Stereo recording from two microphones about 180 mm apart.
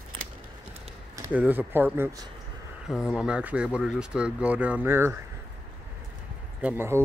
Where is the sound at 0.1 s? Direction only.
30° right (ahead or behind).